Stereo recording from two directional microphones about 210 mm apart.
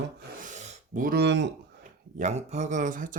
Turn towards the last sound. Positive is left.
turn(degrees=-40)  # may be behind; listen again after turning